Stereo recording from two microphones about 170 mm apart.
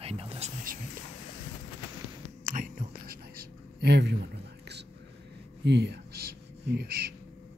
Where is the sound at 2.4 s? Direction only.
50° right (ahead or behind); by 4.9 s 80° right.